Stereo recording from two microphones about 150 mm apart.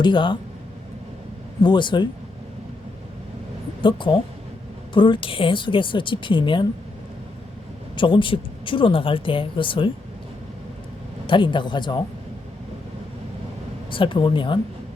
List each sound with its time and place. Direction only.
0.0 s a woman's voice: 30° left (ahead or behind)
1.6 s a woman's voice: 30° left (ahead or behind)
3.8 s a woman's voice: 30° left (ahead or behind)
7.9 s a woman's voice: 35° left (ahead or behind)
11.3 s a woman's voice: 35° left (ahead or behind)
13.9 s a woman's voice: 35° left (ahead or behind)